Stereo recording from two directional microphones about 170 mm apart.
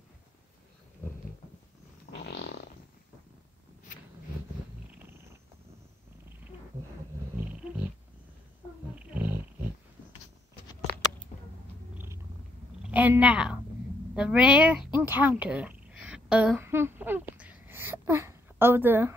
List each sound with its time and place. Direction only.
2.2 s fart: 75° left (ahead or behind)
7.3 s cat: 10° right (ahead or behind)
9.0 s roaring cats: 10° right (ahead or behind)
12.8 s a woman's voice: 10° right (ahead or behind)
16.0 s a sound: 5° right (ahead or behind)